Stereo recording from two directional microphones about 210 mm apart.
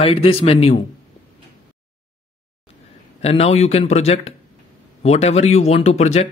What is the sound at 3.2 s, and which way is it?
Speech, 30° left (ahead or behind).